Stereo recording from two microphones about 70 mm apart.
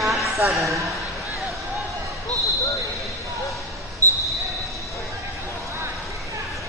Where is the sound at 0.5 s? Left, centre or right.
Centre.